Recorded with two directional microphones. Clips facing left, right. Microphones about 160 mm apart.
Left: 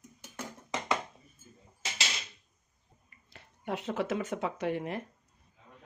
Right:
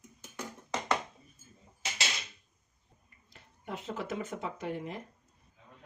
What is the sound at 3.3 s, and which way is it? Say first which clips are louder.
Speech: left 5 dB; 75° left (ahead or behind).